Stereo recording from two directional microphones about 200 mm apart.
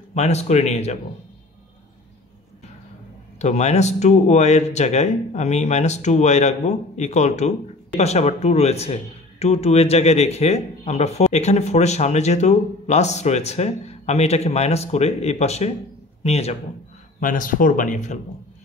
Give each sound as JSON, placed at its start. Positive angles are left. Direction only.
{"t": 0.1, "sound": "speech", "side_deg": 35}
{"t": 3.3, "sound": "speech", "side_deg": 35}